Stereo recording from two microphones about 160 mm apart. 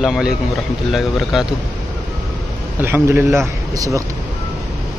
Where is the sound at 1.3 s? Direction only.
5° right (ahead or behind).